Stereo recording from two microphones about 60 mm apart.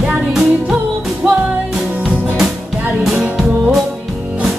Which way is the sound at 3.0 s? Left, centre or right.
Centre.